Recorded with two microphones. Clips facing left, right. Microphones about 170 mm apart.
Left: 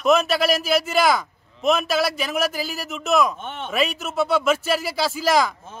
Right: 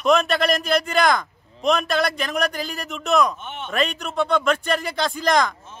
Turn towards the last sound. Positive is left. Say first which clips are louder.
# even
turn(degrees=5)  # may be behind; listen again after turning